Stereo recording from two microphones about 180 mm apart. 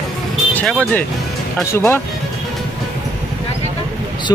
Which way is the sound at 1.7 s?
15° left (ahead or behind).